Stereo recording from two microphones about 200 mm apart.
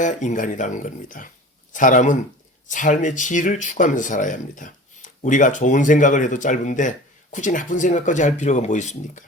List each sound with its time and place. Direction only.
0.0 s speech: 35° left (ahead or behind)